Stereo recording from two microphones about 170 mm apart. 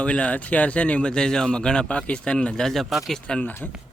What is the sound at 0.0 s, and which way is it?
Speech, 5° left (ahead or behind).